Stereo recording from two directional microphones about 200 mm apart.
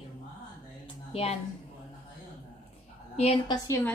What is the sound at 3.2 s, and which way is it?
Speech, 30° left (ahead or behind).